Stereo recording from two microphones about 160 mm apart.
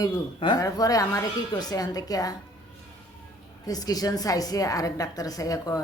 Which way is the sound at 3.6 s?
25° left (ahead or behind).